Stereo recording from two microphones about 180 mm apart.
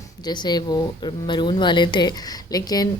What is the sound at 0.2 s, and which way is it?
A woman's voice, 25° left (ahead or behind).